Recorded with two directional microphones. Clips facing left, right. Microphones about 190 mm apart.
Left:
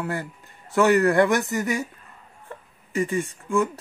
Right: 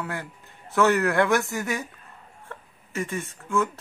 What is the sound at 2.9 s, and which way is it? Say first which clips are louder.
Speech: left 6 dB; 15° left (ahead or behind).